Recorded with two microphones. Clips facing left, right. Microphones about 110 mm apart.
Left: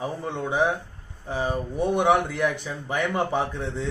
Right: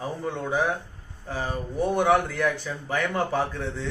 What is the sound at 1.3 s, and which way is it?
A man's voice, 20° left (ahead or behind).